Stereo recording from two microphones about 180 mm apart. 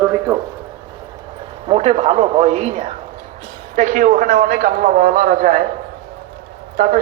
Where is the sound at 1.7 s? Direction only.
35° right (ahead or behind).